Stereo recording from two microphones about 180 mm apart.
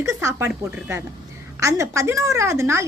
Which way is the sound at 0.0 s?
15° right (ahead or behind).